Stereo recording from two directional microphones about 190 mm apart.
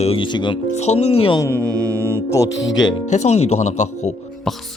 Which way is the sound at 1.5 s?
15° right (ahead or behind).